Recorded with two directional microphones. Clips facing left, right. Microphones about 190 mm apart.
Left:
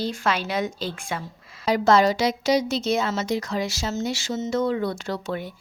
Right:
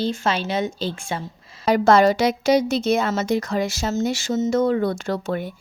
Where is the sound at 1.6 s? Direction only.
55° right (ahead or behind).